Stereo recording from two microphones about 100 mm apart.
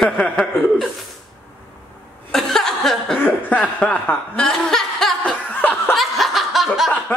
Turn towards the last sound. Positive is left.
turn(degrees=0)  # may be behind; listen again after turning